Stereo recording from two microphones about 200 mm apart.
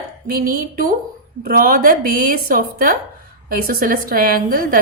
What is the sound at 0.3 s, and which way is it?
A woman's voice, 45° right (ahead or behind).